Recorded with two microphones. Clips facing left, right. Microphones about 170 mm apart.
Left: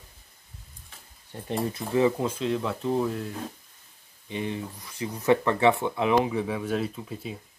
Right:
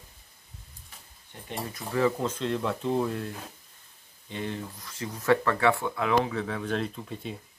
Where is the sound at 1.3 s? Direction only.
35° left (ahead or behind); by 3.3 s centre (ahead or behind).